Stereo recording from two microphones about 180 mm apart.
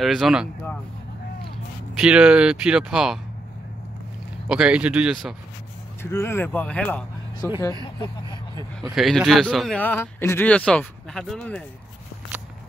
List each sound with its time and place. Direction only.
0.0 s speech: centre (ahead or behind)
2.0 s speech: 5° right (ahead or behind)
4.5 s speech: 5° right (ahead or behind)
6.0 s speech: 15° left (ahead or behind)
7.8 s speech: 25° left (ahead or behind)
8.9 s speech: centre (ahead or behind)